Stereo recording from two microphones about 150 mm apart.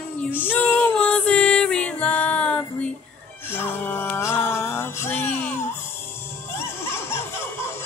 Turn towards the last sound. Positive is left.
turn(degrees=15)  # may be behind; listen again after turning